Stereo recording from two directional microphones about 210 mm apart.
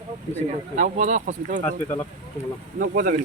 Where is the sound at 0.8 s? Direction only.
35° right (ahead or behind).